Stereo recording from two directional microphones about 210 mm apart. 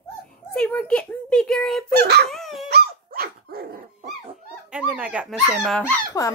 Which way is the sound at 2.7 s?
45° right (ahead or behind).